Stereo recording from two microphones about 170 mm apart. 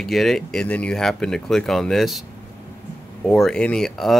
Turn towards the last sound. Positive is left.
turn(degrees=0)  # may be behind; listen again after turning